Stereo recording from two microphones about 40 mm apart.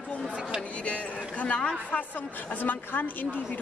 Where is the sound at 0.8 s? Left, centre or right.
Left.